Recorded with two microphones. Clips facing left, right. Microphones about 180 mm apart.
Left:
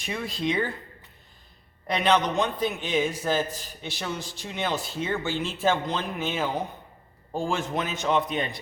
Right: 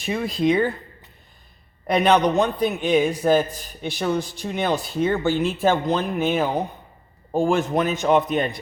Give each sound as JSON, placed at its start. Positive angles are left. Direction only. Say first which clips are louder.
{"t": 0.0, "sound": "speech", "louder": "right 8 dB", "side_deg": -35}
{"t": 1.9, "sound": "speech", "louder": "right 6 dB", "side_deg": -50}